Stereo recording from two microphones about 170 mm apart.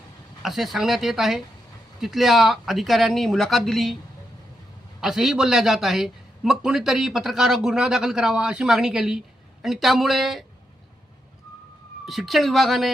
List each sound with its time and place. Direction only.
0.4 s a man's voice: centre (ahead or behind)
4.9 s a man's voice: centre (ahead or behind)
12.0 s a man's voice: centre (ahead or behind)